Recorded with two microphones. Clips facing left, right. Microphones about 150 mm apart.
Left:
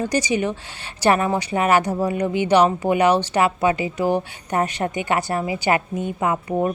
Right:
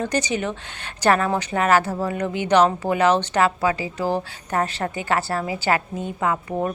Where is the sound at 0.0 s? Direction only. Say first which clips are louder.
Left 2 dB; 10° left (ahead or behind).